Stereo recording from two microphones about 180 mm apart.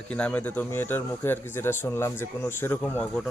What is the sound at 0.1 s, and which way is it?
Speech, 10° left (ahead or behind).